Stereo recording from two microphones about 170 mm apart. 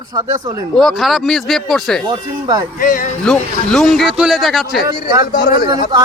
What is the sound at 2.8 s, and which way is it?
Speech, 55° left (ahead or behind).